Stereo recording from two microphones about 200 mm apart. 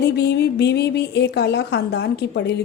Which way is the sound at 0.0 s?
55° left (ahead or behind).